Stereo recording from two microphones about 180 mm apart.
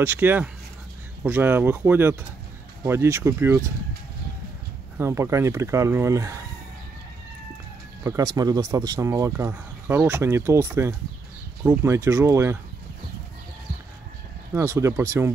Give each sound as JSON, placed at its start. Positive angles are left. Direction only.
{"t": 0.0, "sound": "speech", "side_deg": -10}
{"t": 4.9, "sound": "speech", "side_deg": -15}
{"t": 8.0, "sound": "speech", "side_deg": -15}
{"t": 14.5, "sound": "speech", "side_deg": -15}